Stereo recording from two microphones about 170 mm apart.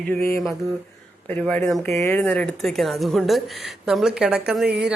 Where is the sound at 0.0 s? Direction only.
15° left (ahead or behind).